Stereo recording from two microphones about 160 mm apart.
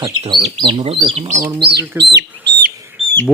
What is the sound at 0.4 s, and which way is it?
Speech, 25° right (ahead or behind).